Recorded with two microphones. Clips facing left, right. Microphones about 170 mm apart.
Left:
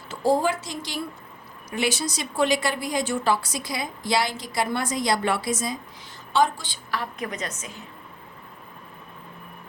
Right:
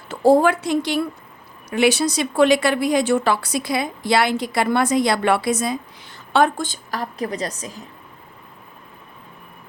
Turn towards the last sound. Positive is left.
turn(degrees=-35)  # may be behind; listen again after turning